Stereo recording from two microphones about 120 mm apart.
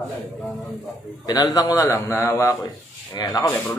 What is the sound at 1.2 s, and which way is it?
A woman's voice, 35° left (ahead or behind).